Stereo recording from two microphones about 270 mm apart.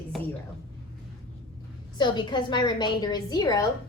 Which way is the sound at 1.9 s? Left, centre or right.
Centre.